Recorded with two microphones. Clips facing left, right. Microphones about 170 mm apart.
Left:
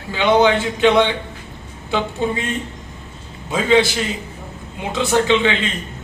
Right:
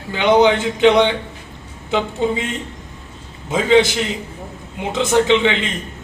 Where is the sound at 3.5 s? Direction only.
20° right (ahead or behind).